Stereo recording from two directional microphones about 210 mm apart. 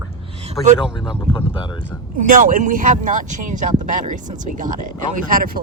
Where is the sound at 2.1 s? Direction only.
40° right (ahead or behind).